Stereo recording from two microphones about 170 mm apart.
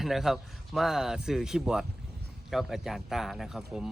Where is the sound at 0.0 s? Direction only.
Centre (ahead or behind).